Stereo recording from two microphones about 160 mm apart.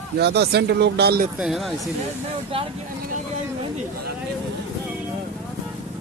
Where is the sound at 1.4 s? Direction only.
Centre (ahead or behind).